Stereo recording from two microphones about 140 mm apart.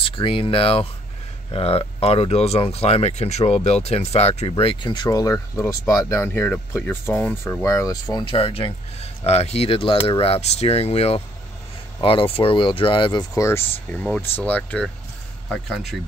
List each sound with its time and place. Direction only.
0.0 s speech: 40° left (ahead or behind); by 7.6 s 10° left (ahead or behind)
7.6 s speech: 25° left (ahead or behind)